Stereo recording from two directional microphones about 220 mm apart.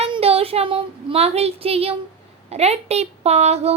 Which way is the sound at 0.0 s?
25° right (ahead or behind).